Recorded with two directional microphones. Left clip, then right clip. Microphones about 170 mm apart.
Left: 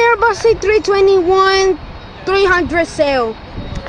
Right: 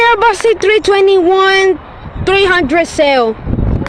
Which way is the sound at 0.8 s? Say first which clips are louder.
Right 2 dB; 65° right (ahead or behind).